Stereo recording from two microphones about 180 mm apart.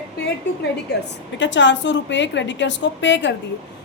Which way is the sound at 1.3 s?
85° left.